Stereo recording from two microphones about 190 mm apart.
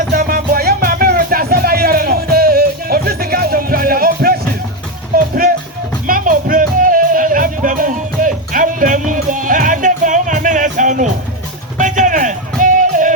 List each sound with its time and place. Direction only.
0.1 s music: 50° right (ahead or behind)